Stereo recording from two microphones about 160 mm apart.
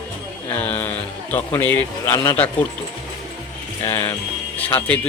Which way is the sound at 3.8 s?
15° left (ahead or behind).